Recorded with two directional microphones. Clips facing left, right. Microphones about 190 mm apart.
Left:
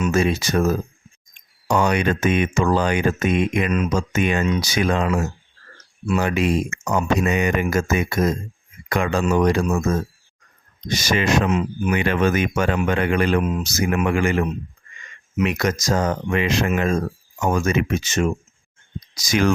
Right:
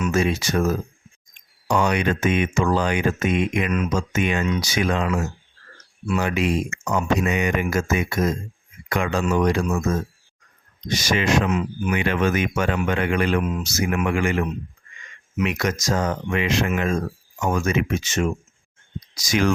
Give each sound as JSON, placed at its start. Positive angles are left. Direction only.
{"t": 0.1, "sound": "speech", "side_deg": 40}
{"t": 11.1, "sound": "speech", "side_deg": 40}
{"t": 11.4, "sound": "speech", "side_deg": 25}
{"t": 11.9, "sound": "speech", "side_deg": 40}
{"t": 15.4, "sound": "speech", "side_deg": 40}